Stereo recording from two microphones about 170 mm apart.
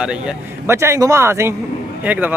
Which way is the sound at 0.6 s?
15° right (ahead or behind).